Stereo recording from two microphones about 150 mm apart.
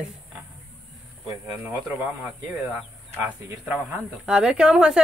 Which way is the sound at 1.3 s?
10° right (ahead or behind).